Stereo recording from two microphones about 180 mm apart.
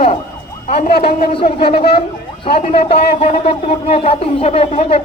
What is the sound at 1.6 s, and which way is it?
Speech, 60° left (ahead or behind).